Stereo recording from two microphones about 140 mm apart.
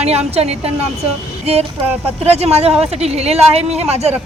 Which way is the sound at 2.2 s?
50° right (ahead or behind).